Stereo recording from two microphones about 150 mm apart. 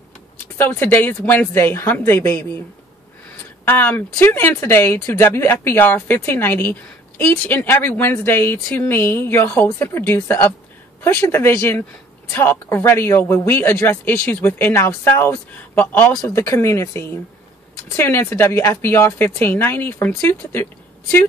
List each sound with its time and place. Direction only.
0.6 s speech: 15° left (ahead or behind)
3.6 s speech: 15° left (ahead or behind)